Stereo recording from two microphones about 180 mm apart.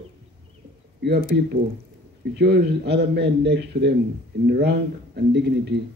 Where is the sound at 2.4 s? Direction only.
65° right (ahead or behind).